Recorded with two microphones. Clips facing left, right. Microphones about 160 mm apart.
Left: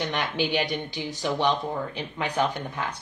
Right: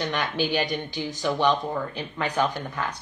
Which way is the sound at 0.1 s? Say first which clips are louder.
Right 1 dB; 20° left (ahead or behind).